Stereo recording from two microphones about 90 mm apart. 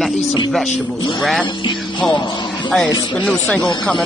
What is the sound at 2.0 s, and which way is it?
Speech, 10° left (ahead or behind).